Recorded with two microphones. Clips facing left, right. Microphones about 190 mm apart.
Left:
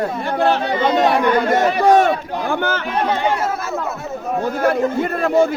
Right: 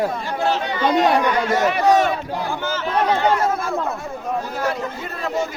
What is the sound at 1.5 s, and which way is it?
A man's voice, 55° left (ahead or behind).